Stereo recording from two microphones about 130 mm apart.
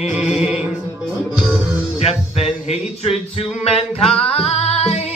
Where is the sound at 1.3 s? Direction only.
Centre (ahead or behind).